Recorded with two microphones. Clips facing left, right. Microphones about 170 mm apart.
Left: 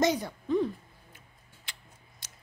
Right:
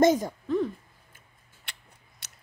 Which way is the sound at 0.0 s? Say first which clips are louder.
Right 6 dB; 45° right (ahead or behind).